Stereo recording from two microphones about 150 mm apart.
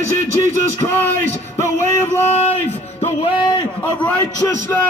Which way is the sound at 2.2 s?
45° left (ahead or behind).